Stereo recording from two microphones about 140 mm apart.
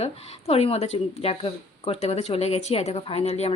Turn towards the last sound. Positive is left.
turn(degrees=50)  # may be behind; listen again after turning